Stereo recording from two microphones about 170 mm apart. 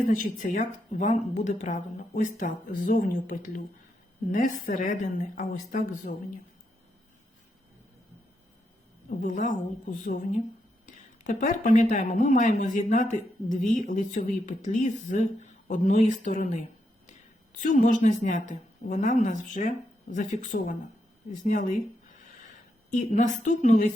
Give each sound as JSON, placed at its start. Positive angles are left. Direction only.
{"t": 0.0, "sound": "speech", "side_deg": 50}
{"t": 9.0, "sound": "speech", "side_deg": 50}
{"t": 17.6, "sound": "speech", "side_deg": 50}
{"t": 22.9, "sound": "speech", "side_deg": 45}